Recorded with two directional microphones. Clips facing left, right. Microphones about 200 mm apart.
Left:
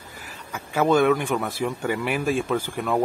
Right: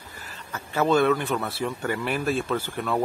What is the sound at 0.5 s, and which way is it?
A man's voice, 10° left (ahead or behind).